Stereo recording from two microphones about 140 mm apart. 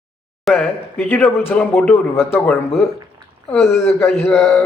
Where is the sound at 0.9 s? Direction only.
15° left (ahead or behind).